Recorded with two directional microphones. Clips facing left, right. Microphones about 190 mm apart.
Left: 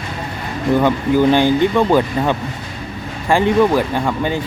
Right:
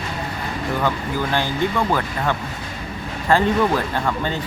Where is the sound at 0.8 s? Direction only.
20° left (ahead or behind).